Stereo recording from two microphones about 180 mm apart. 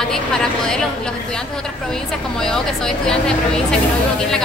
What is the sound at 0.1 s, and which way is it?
Speech, 5° left (ahead or behind).